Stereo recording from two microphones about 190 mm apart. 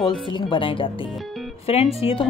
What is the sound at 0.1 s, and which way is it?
Speech, 25° left (ahead or behind).